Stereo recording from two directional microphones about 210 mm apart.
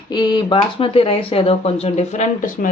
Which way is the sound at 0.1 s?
20° left (ahead or behind).